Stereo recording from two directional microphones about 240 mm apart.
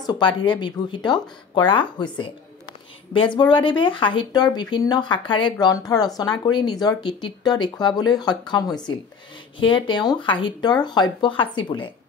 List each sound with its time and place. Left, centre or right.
0.0 s speech: centre